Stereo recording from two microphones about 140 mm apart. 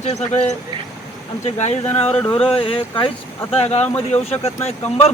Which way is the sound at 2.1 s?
5° left (ahead or behind).